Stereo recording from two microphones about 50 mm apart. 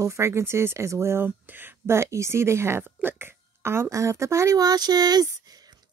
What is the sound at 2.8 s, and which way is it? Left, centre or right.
A woman's voice, right.